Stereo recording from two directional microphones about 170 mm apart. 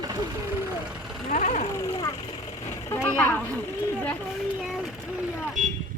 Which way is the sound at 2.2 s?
35° left (ahead or behind).